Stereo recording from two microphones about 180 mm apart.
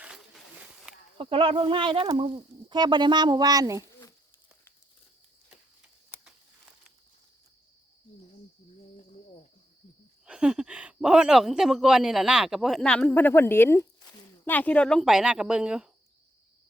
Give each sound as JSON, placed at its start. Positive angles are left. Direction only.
{"t": 0.0, "sound": "a sound", "side_deg": -5}
{"t": 1.2, "sound": "speech", "side_deg": -30}
{"t": 10.2, "sound": "speech", "side_deg": -5}